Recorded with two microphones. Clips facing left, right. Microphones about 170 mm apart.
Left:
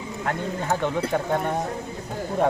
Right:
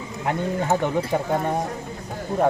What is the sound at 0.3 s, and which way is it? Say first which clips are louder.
Speech: right 4 dB; 15° right (ahead or behind).